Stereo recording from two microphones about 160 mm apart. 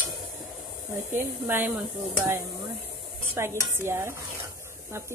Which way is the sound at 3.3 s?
15° right (ahead or behind).